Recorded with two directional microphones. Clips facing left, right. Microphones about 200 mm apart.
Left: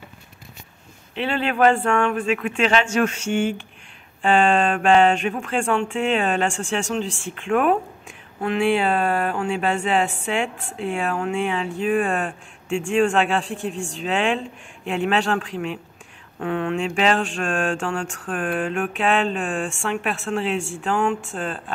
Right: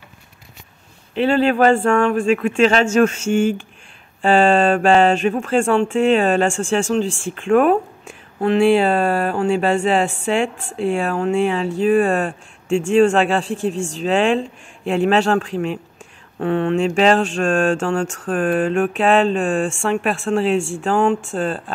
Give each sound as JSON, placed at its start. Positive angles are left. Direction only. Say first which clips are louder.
{"t": 1.1, "sound": "speech", "louder": "right 8 dB", "side_deg": -40}